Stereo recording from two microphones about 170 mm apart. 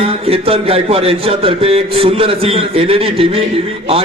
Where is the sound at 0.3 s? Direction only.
35° right (ahead or behind).